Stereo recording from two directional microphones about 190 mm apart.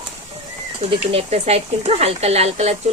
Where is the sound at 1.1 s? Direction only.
30° right (ahead or behind).